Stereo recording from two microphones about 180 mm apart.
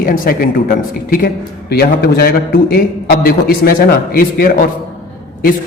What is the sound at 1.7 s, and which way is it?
A man's voice, 60° left (ahead or behind).